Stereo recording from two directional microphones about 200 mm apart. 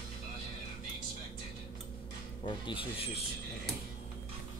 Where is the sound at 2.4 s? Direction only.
25° left (ahead or behind).